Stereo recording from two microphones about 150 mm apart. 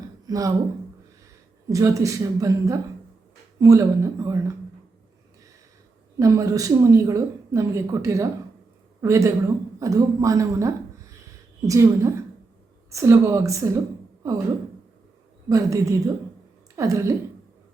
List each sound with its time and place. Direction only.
0.3 s speech: 25° right (ahead or behind)
1.7 s a woman's voice: 20° right (ahead or behind)
6.1 s a woman's voice: 20° right (ahead or behind)
15.4 s a woman's voice: 20° right (ahead or behind)